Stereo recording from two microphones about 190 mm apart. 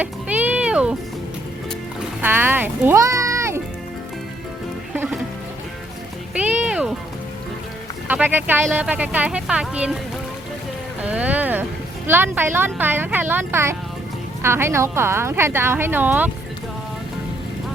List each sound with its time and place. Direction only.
0.0 s music: 10° right (ahead or behind)
2.2 s music: 10° right (ahead or behind)
6.3 s music: 10° right (ahead or behind)
8.0 s speech: 10° right (ahead or behind)
11.0 s a sound: 5° right (ahead or behind)
12.0 s speech: 10° right (ahead or behind)